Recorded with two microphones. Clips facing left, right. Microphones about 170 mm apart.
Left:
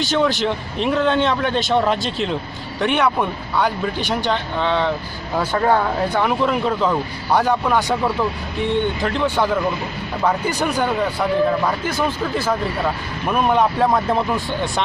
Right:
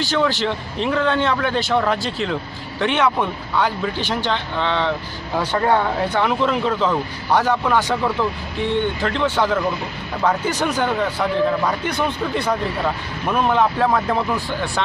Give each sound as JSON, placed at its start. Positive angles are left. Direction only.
{"t": 0.0, "sound": "a man's voice", "side_deg": 15}